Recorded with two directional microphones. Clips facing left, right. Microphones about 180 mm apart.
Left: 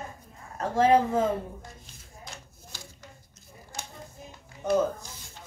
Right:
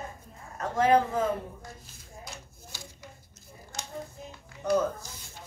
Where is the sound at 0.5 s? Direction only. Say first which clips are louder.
Left 2 dB; 30° left (ahead or behind).